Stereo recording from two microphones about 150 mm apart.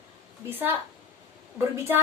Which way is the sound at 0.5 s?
15° right (ahead or behind).